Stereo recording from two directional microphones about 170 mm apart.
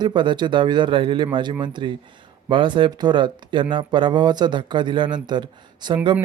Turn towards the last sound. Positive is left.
turn(degrees=-25)  # may be behind; listen again after turning